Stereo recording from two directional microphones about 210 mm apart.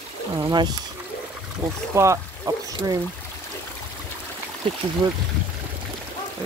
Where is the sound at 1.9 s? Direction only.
15° right (ahead or behind).